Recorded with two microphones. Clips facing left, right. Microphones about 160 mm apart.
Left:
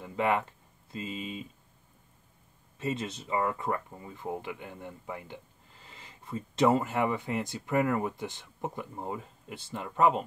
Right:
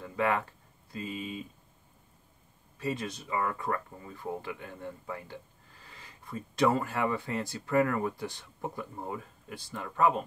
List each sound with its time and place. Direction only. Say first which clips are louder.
0.0 s speech: left 1 dB; 20° left (ahead or behind)
2.8 s speech: left 1 dB; 25° left (ahead or behind)